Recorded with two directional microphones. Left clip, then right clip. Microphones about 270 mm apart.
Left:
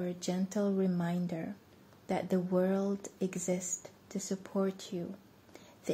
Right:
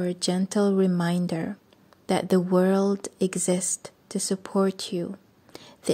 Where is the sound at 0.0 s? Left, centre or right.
Right.